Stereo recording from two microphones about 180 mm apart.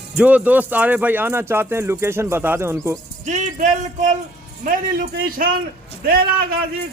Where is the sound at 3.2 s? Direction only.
40° right (ahead or behind).